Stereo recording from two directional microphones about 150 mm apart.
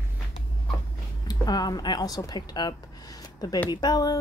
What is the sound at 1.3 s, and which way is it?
Speech, 25° left (ahead or behind).